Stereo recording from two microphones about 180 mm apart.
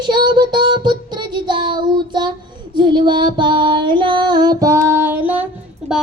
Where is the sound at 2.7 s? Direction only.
25° right (ahead or behind); by 5.5 s 10° right (ahead or behind).